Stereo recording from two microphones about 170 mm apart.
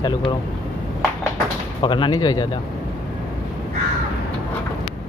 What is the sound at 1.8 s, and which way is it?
Speech, 30° left (ahead or behind).